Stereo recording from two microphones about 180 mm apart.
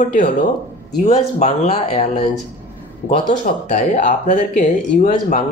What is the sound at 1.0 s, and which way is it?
Speech, 40° left (ahead or behind).